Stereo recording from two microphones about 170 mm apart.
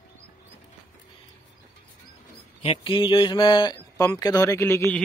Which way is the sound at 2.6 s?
35° left (ahead or behind).